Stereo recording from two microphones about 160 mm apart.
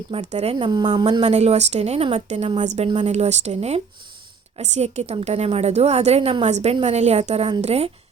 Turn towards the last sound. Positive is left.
turn(degrees=-40)  # may be behind; listen again after turning